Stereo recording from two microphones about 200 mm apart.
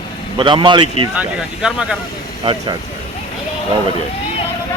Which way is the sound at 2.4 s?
25° right (ahead or behind).